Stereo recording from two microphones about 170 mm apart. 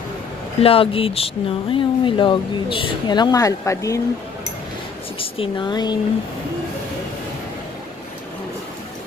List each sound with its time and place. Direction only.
0.6 s speech: 35° left (ahead or behind)
5.2 s speech: 30° left (ahead or behind)